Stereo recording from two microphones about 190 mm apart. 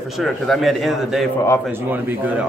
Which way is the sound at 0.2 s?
Centre (ahead or behind).